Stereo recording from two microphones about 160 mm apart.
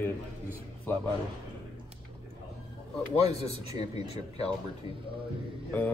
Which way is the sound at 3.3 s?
40° left (ahead or behind).